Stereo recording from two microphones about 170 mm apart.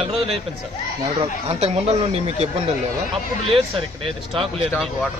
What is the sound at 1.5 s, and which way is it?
Speech, 35° right (ahead or behind).